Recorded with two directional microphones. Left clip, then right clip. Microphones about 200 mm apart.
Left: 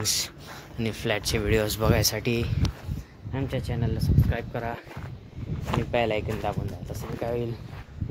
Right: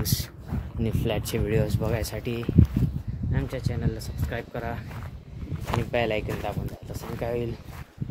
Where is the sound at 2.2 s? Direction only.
25° left (ahead or behind).